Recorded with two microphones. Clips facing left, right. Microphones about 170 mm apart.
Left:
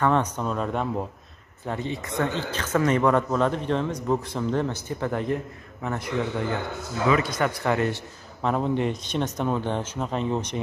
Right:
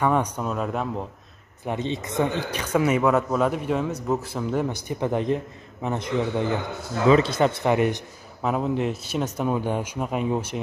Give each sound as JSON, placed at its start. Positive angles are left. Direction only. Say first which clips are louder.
{"t": 0.0, "sound": "speech", "louder": "even", "side_deg": -10}
{"t": 1.7, "sound": "a man's voice", "louder": "right 2 dB", "side_deg": -20}
{"t": 8.4, "sound": "speech", "louder": "even", "side_deg": -5}